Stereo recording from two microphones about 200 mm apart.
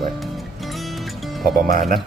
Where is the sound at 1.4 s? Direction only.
50° right (ahead or behind).